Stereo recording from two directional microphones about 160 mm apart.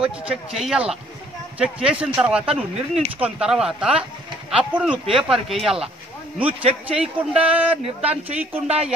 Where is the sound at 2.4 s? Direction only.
40° right (ahead or behind).